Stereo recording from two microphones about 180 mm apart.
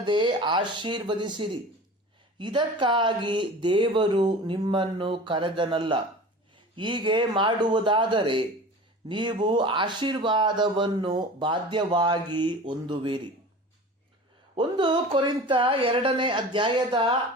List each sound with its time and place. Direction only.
0.0 s speech: 25° right (ahead or behind)
14.5 s speech: 25° right (ahead or behind)